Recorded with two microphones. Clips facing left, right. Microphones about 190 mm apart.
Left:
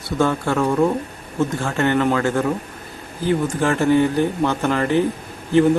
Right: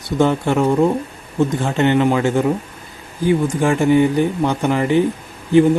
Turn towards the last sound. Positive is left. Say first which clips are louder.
# right 3 dB
turn(degrees=-15)  # may be behind; listen again after turning